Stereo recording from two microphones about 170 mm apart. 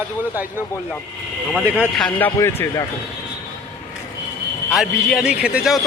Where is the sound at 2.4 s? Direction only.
15° left (ahead or behind).